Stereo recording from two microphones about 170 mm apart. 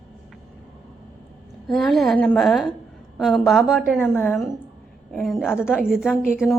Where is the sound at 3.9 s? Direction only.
10° left (ahead or behind).